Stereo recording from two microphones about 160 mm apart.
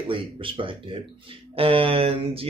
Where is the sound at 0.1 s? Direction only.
35° right (ahead or behind).